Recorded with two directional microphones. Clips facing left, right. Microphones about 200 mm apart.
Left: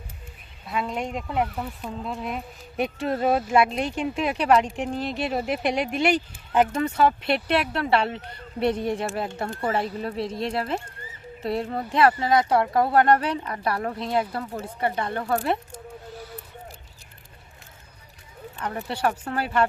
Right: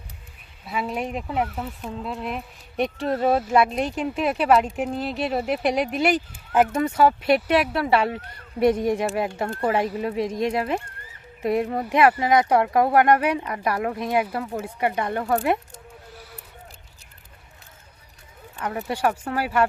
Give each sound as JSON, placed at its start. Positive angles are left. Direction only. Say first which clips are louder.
{"t": 0.6, "sound": "speech", "louder": "right 1 dB", "side_deg": -5}
{"t": 18.6, "sound": "speech", "louder": "right 2 dB", "side_deg": -10}